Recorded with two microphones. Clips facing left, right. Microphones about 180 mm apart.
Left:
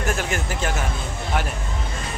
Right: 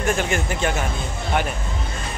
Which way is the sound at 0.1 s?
5° left (ahead or behind).